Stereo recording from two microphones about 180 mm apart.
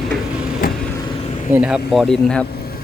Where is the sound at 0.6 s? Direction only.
50° left (ahead or behind).